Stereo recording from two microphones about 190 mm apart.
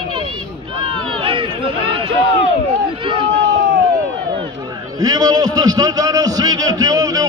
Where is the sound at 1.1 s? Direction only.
25° right (ahead or behind).